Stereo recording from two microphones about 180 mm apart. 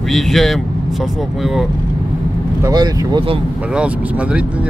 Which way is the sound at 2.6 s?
20° right (ahead or behind).